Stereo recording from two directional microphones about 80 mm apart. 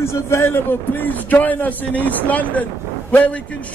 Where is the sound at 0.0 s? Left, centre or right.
Left.